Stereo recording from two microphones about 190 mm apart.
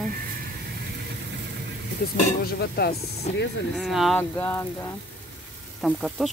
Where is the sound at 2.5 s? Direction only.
55° left (ahead or behind).